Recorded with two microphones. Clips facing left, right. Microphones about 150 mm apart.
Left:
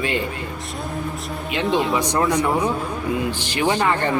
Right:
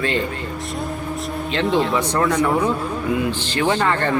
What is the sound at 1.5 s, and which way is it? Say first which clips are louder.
Speech: right 1 dB; 15° left (ahead or behind).